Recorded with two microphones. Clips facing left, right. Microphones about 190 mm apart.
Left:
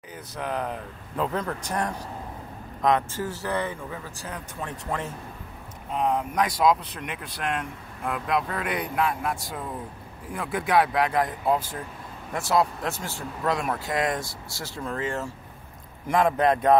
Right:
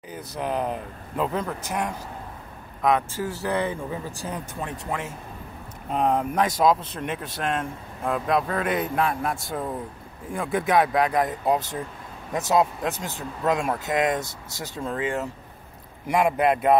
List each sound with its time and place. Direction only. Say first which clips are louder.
0.1 s speech: right 3 dB; 25° right (ahead or behind)
1.1 s speech: right 1 dB; 10° right (ahead or behind)
5.9 s speech: right 2 dB; 50° right (ahead or behind)
6.3 s speech: even; 25° right (ahead or behind); by 16.7 s 10° right (ahead or behind)